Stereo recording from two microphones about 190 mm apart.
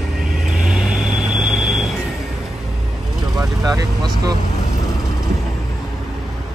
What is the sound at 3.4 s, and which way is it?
Vehicle, 15° right (ahead or behind).